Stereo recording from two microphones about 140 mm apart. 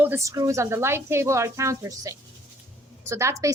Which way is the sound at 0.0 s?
20° right (ahead or behind).